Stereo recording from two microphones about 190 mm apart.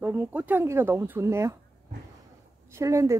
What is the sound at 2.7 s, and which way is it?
Speech, 15° right (ahead or behind).